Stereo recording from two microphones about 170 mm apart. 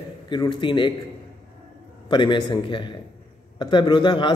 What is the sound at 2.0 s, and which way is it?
Speech, 25° left (ahead or behind).